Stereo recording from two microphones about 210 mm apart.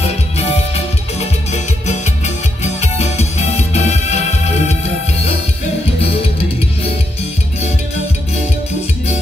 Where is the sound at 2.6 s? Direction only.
30° left (ahead or behind).